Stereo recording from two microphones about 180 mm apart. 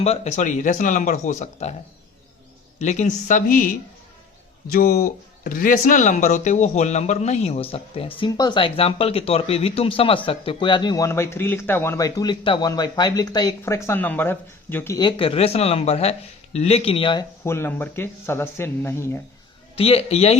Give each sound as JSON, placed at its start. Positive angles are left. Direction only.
{"t": 0.0, "sound": "speech", "side_deg": 40}
{"t": 2.7, "sound": "speech", "side_deg": 40}
{"t": 14.9, "sound": "speech", "side_deg": 30}
{"t": 17.4, "sound": "speech", "side_deg": 15}
{"t": 19.7, "sound": "speech", "side_deg": 35}